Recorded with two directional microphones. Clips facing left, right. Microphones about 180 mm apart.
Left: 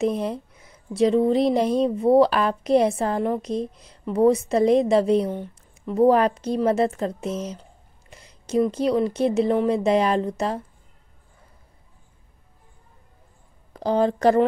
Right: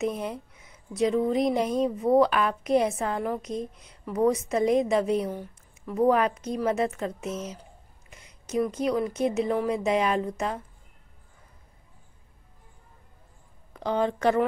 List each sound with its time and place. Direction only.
0.0 s speech: 30° left (ahead or behind)
13.7 s speech: 35° left (ahead or behind)